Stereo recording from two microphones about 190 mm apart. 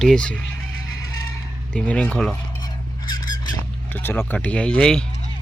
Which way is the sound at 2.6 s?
20° left (ahead or behind).